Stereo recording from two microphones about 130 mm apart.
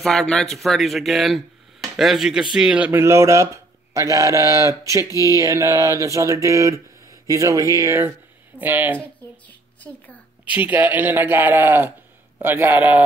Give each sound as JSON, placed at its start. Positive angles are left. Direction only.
{"t": 0.0, "sound": "a man's voice", "side_deg": 5}
{"t": 3.9, "sound": "mantra", "side_deg": -25}
{"t": 8.5, "sound": "a man's voice", "side_deg": -15}
{"t": 8.9, "sound": "a sound", "side_deg": 10}
{"t": 10.4, "sound": "a man's voice", "side_deg": -10}